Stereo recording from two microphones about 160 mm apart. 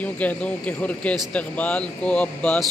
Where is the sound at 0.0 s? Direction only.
10° left (ahead or behind).